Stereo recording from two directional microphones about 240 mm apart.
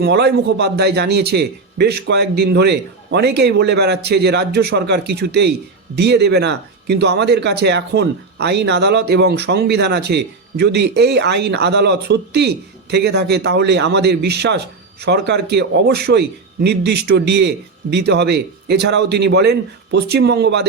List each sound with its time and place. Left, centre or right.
0.0 s speech: right